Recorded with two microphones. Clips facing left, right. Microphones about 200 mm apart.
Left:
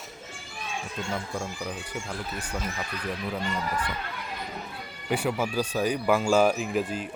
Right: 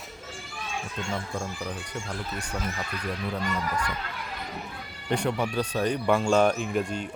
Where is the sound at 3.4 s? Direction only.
25° left (ahead or behind).